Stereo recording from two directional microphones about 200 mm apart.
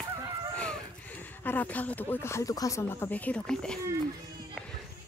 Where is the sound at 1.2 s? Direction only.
10° left (ahead or behind).